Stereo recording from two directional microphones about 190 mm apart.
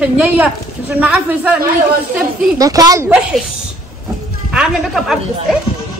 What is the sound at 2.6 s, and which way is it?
Speech, 20° right (ahead or behind).